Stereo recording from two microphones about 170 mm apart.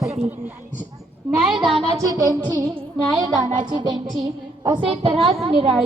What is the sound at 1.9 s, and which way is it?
Music, 20° right (ahead or behind).